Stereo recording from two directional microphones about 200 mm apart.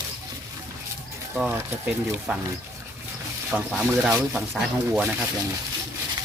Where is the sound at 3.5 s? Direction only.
5° right (ahead or behind).